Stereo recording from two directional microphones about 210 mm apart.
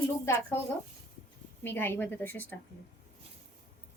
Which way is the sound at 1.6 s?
10° left (ahead or behind).